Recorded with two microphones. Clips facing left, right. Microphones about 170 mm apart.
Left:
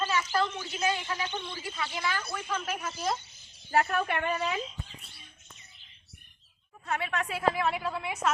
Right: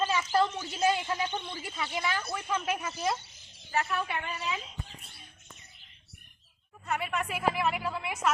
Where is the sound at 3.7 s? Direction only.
50° left (ahead or behind).